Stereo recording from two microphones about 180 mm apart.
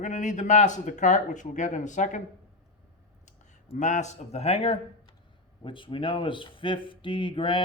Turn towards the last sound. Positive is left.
turn(degrees=30)  # may be behind; listen again after turning